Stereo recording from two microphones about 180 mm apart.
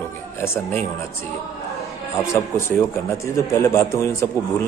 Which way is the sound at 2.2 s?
15° left (ahead or behind).